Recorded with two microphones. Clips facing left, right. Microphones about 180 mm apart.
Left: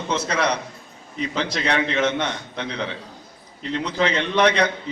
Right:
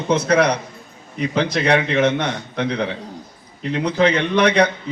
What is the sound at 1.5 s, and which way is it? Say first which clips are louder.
A man's voice: right 4 dB; 60° right (ahead or behind).